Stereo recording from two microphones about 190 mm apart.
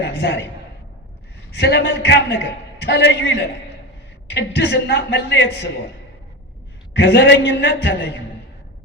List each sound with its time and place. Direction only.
0.0 s a man's voice: 65° left (ahead or behind)
1.5 s a man's voice: 65° left (ahead or behind)
6.9 s a man's voice: 65° left (ahead or behind)